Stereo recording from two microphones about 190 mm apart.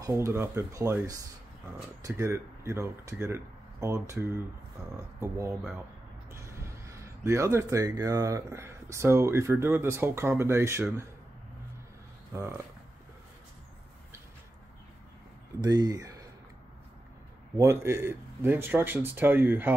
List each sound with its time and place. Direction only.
0.0 s speech: 15° right (ahead or behind)
5.6 s speech: 5° right (ahead or behind)
6.3 s speech: 15° right (ahead or behind)
12.3 s speech: 15° right (ahead or behind)
15.6 s speech: 20° right (ahead or behind)
17.6 s speech: 15° right (ahead or behind)